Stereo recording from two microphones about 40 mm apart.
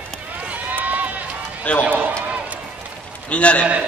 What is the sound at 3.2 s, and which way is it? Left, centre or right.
Speech, left.